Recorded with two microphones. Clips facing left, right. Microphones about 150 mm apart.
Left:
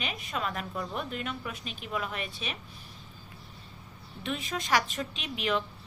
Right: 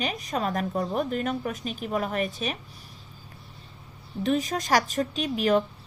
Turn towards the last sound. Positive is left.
turn(degrees=-45)  # may be behind; listen again after turning